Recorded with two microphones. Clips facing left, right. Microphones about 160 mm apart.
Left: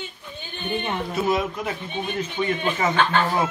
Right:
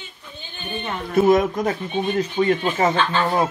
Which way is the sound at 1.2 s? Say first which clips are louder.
Right 9 dB; 50° right (ahead or behind).